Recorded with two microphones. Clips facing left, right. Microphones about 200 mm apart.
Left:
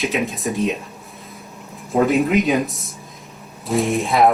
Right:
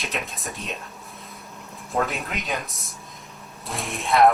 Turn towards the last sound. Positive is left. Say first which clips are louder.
# left 3 dB
turn(degrees=0)  # may be behind; listen again after turning